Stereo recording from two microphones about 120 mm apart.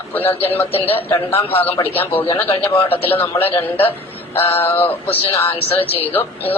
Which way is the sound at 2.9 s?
50° left (ahead or behind).